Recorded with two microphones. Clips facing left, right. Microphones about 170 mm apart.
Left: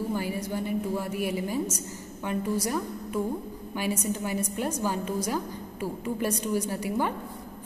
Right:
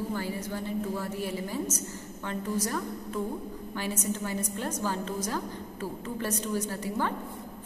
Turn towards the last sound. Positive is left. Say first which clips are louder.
# left 3 dB
turn(degrees=15)  # may be behind; listen again after turning